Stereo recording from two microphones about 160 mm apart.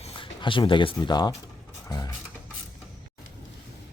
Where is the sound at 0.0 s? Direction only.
35° left (ahead or behind).